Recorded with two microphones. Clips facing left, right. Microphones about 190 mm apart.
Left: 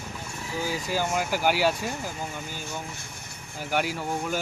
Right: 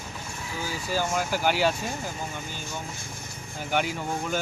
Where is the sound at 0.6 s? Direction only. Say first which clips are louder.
Even; 15° left (ahead or behind).